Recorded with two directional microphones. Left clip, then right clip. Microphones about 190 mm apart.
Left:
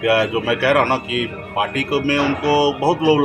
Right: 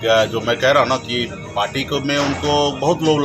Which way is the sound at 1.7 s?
30° left (ahead or behind).